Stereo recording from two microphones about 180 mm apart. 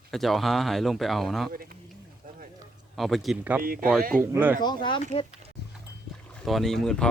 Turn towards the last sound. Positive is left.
turn(degrees=5)  # may be behind; listen again after turning